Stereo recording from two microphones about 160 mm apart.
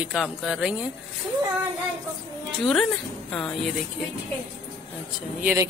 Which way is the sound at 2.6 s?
5° left (ahead or behind).